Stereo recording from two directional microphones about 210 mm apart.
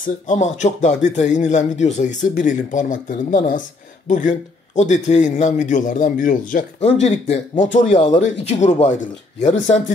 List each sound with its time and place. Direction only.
0.3 s a man's voice: 35° left (ahead or behind)